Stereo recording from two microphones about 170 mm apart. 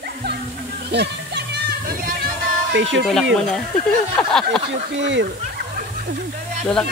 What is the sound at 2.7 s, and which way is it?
Speech, 90° right.